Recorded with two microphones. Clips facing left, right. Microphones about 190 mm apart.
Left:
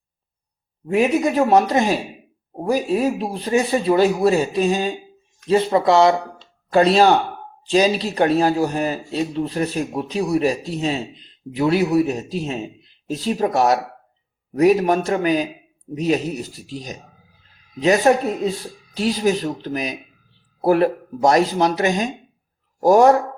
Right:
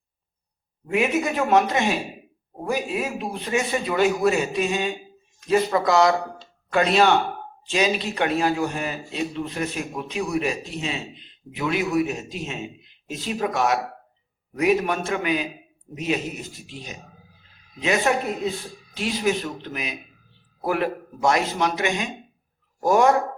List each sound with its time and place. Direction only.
0.9 s speech: 35° left (ahead or behind)
18.1 s speech: 40° left (ahead or behind)